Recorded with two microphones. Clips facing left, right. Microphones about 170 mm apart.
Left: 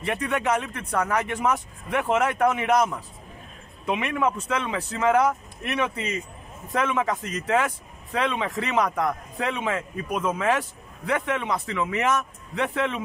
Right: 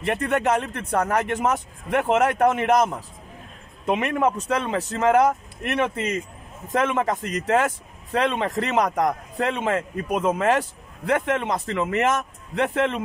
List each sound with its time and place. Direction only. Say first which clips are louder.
0.0 s speech: right 3 dB; 45° right (ahead or behind)